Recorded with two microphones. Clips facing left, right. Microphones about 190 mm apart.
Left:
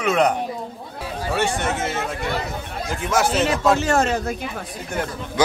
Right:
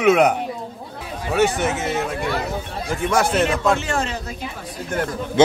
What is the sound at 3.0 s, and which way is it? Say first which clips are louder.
Speech: right 1 dB; 5° left (ahead or behind).